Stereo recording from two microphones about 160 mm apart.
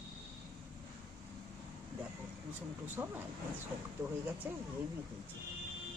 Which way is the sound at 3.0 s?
15° right (ahead or behind).